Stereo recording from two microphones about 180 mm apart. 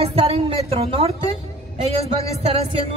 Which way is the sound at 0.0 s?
35° right (ahead or behind).